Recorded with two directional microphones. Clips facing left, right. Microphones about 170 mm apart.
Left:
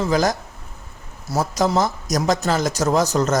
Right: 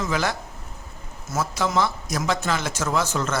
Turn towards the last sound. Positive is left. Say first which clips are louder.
# left 6 dB
turn(degrees=40)  # may be behind; listen again after turning